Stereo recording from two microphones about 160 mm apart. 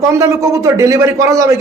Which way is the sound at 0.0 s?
20° right (ahead or behind).